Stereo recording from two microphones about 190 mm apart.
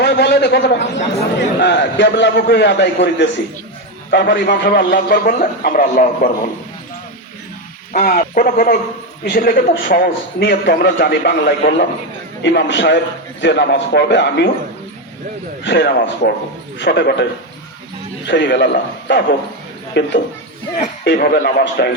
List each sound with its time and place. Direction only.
0.0 s a man's voice: 60° left (ahead or behind); by 6.3 s 45° left (ahead or behind)
7.9 s a man's voice: 50° left (ahead or behind)
15.6 s a man's voice: 65° left (ahead or behind)
18.3 s a man's voice: 65° left (ahead or behind); by 21.5 s 50° left (ahead or behind)
21.8 s a man's voice: 60° left (ahead or behind)